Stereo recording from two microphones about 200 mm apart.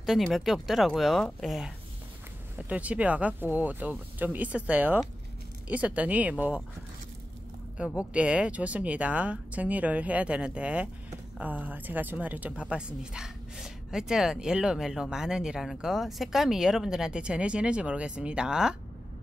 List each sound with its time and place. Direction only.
0.0 s speech: centre (ahead or behind)
2.7 s speech: 5° right (ahead or behind)
8.1 s speech: 5° right (ahead or behind)